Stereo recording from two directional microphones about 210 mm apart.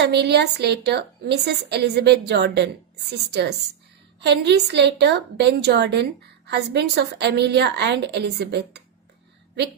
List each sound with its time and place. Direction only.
0.0 s a woman's voice: 55° right (ahead or behind)